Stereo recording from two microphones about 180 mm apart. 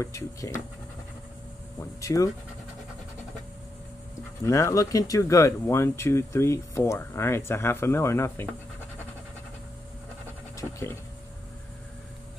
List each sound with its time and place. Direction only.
0.0 s speech: 15° left (ahead or behind)
2.0 s speech: 20° left (ahead or behind)
4.5 s speech: 15° left (ahead or behind)
10.6 s a sound: 15° left (ahead or behind)